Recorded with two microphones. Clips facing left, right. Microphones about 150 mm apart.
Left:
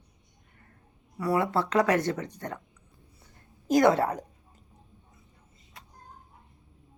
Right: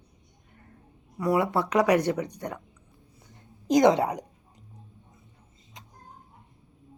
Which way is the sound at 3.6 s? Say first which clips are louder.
Right 2 dB; 20° right (ahead or behind).